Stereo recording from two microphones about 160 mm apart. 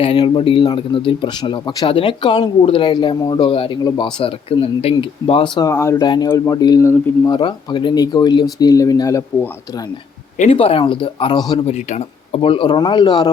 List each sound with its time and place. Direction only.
0.0 s a man's voice: 35° left (ahead or behind)
10.3 s a man's voice: 40° left (ahead or behind); by 11.6 s 25° left (ahead or behind)
11.6 s a man's voice: 45° left (ahead or behind)